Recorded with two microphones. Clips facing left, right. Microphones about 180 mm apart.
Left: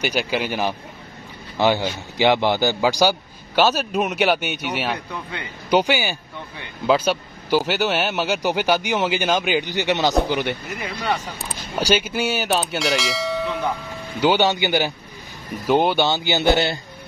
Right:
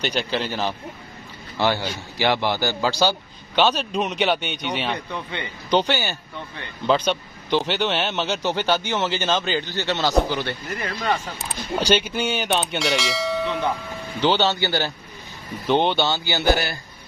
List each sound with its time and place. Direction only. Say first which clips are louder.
0.0 s a man's voice: left 2 dB; 10° left (ahead or behind)
11.8 s bell: left 1 dB; 10° left (ahead or behind)
14.2 s a man's voice: left 2 dB; 10° left (ahead or behind)